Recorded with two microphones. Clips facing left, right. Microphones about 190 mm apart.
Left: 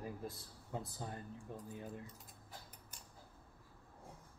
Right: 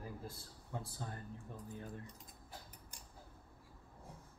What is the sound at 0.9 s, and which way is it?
Speech, 20° left (ahead or behind).